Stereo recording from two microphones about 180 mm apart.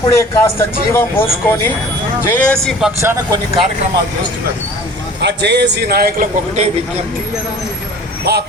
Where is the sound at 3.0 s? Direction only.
15° right (ahead or behind).